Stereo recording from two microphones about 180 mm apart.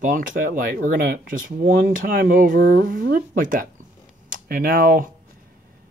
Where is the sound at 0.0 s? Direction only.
45° right (ahead or behind).